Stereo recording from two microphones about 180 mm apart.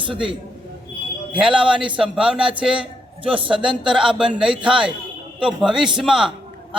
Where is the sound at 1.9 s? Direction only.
5° right (ahead or behind).